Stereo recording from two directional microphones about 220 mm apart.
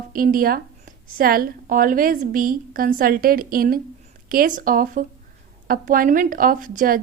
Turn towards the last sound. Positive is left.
turn(degrees=-40)  # may be behind; listen again after turning